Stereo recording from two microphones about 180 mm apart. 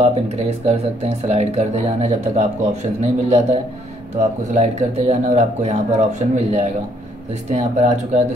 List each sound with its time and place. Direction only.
0.0 s speech: 35° right (ahead or behind)
4.6 s speech: 40° right (ahead or behind)